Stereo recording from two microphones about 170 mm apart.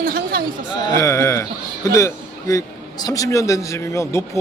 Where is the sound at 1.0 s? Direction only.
15° left (ahead or behind).